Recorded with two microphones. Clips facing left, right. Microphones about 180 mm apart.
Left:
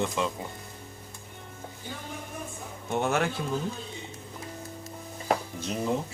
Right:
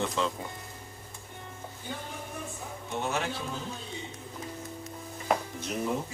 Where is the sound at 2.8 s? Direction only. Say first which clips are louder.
Left 5 dB; 55° left (ahead or behind).